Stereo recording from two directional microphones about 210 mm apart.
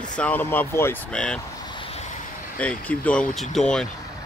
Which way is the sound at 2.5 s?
5° left (ahead or behind).